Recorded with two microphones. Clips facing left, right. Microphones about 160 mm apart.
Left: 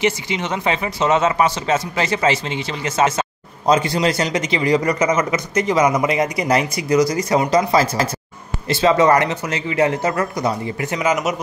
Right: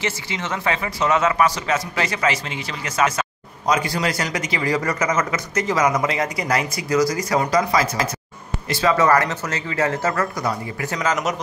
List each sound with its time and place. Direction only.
0.0 s speech: 20° left (ahead or behind)